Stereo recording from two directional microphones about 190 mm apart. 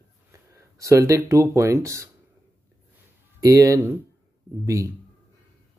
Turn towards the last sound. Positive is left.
turn(degrees=-15)  # may be behind; listen again after turning